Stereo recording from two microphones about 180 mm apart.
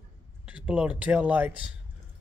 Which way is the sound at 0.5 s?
5° right (ahead or behind).